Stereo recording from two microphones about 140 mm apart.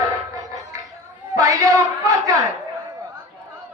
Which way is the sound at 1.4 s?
25° right (ahead or behind).